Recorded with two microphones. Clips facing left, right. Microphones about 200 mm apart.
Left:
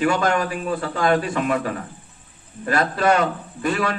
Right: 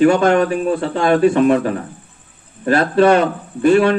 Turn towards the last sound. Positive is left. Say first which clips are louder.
# right 11 dB
turn(degrees=-30)  # may be behind; listen again after turning